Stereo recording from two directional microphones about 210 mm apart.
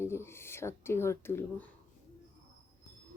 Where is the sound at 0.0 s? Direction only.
10° left (ahead or behind).